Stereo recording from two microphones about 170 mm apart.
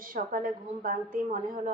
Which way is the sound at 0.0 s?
55° right (ahead or behind).